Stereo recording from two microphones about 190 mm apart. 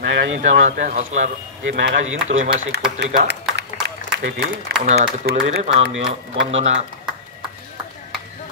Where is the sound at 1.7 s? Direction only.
90° right.